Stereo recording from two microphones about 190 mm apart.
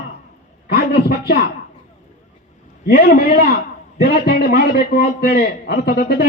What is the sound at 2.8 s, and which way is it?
A man's voice, 55° left (ahead or behind).